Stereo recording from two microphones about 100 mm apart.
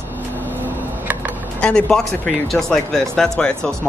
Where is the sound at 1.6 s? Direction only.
10° left (ahead or behind).